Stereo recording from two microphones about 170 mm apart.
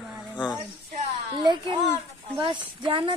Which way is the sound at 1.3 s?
30° right (ahead or behind).